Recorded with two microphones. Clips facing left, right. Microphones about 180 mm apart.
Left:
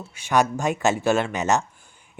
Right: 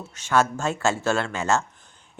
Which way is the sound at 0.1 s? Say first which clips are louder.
Left 1 dB; 15° left (ahead or behind).